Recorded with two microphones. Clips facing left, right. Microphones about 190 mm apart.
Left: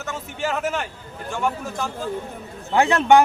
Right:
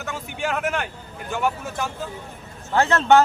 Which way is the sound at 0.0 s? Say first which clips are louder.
Left 1 dB; centre (ahead or behind).